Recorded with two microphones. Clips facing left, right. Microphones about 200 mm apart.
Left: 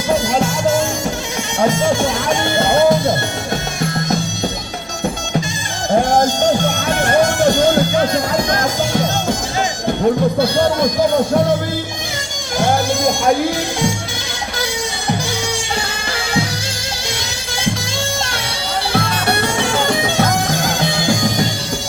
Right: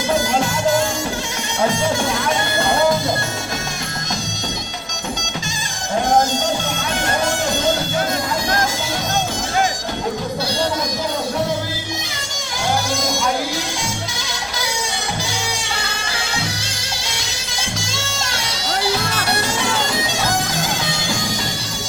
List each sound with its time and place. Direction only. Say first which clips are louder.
7.0 s music: left 8 dB; 55° left (ahead or behind)
10.4 s music: left 6 dB; 55° left (ahead or behind)
12.5 s music: left 5 dB; 55° left (ahead or behind)
18.9 s music: left 4 dB; 55° left (ahead or behind)